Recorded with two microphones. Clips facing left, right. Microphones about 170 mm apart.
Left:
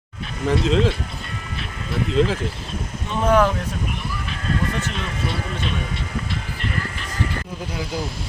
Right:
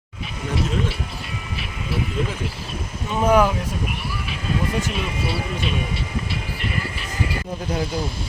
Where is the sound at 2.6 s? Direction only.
10° right (ahead or behind).